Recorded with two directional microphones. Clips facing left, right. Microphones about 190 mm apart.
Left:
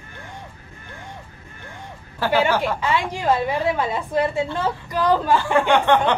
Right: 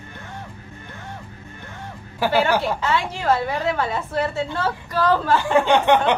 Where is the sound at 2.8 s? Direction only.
15° left (ahead or behind).